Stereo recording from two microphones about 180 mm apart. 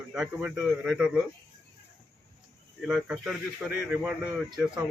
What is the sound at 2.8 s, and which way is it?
A man's voice, 5° right (ahead or behind).